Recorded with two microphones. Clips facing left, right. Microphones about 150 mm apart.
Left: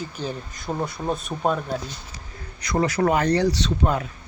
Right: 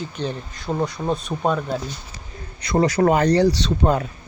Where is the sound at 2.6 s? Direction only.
30° right (ahead or behind).